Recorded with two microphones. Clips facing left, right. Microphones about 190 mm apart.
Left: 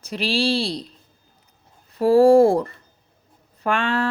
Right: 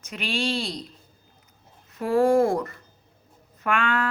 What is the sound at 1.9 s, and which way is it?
Speech, 30° left (ahead or behind).